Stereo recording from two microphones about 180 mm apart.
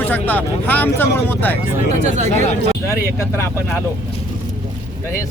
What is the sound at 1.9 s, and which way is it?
Speech, 40° right (ahead or behind).